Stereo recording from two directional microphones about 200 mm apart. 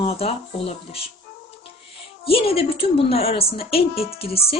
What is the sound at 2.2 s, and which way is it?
A woman's voice, 30° left (ahead or behind).